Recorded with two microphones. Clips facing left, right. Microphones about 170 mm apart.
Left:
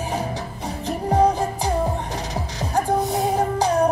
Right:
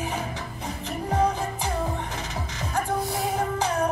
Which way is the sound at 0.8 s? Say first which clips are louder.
Left 6 dB; 35° left (ahead or behind).